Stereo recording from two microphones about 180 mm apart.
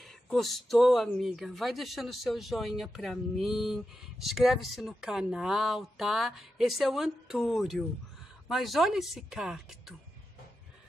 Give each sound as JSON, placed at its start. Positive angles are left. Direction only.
{"t": 0.0, "sound": "speech", "side_deg": 0}